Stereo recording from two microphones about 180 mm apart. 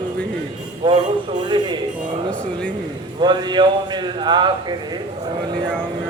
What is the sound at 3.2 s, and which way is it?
A man's voice, 25° right (ahead or behind).